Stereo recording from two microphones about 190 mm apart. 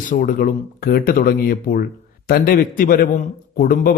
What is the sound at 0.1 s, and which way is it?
A man's voice, 50° left (ahead or behind).